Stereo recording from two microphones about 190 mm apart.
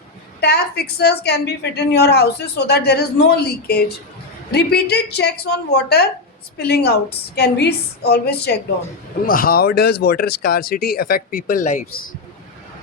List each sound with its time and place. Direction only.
0.3 s a woman's voice: 60° left (ahead or behind); by 12.1 s 40° left (ahead or behind)